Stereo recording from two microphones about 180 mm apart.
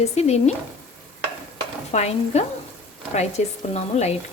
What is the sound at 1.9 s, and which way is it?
Speech, 35° left (ahead or behind).